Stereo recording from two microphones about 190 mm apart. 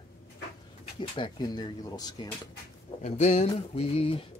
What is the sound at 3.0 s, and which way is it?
Speech, 35° left (ahead or behind).